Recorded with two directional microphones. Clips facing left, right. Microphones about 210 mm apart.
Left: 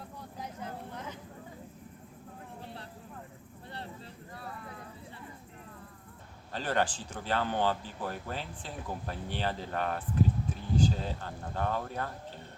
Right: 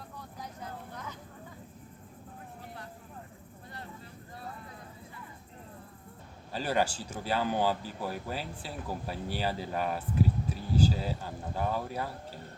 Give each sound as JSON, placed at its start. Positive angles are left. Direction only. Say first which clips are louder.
{"t": 0.3, "sound": "vehicle", "louder": "left 3 dB", "side_deg": 25}
{"t": 6.5, "sound": "speech", "louder": "right 1 dB", "side_deg": -10}